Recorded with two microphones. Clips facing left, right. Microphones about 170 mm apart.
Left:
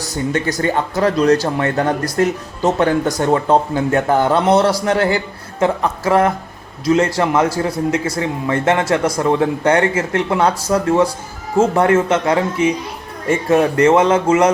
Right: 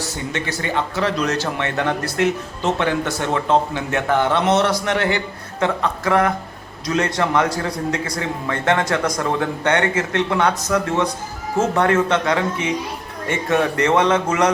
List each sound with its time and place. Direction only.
0.6 s a man's voice: 40° left (ahead or behind)